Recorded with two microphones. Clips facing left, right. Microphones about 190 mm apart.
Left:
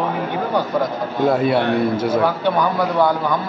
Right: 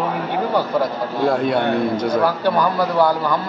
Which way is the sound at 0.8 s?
5° left (ahead or behind).